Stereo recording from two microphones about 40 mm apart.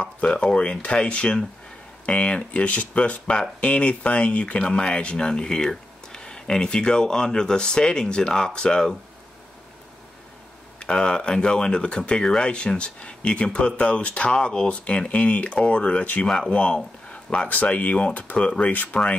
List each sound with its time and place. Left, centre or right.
0.0 s speech: left; by 8.9 s centre
10.8 s speech: left
12.4 s speech: left
17.5 s speech: left